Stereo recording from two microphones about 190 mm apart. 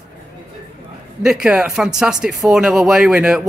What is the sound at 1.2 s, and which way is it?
A man's voice, 5° right (ahead or behind).